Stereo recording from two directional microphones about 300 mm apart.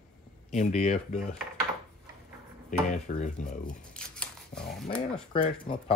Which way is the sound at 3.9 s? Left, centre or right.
Centre.